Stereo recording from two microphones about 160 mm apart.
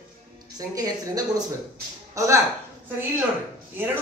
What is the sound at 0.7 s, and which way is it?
A woman's voice, 25° right (ahead or behind).